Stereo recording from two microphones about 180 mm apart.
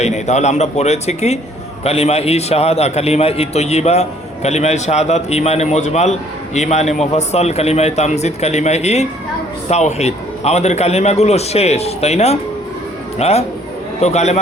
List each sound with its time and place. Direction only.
0.0 s a man's voice: 40° left (ahead or behind)